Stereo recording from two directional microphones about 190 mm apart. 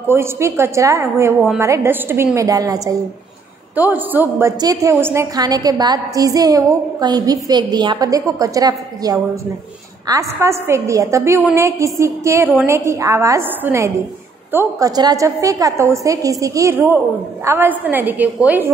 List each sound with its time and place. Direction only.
0.1 s a woman's voice: 15° right (ahead or behind)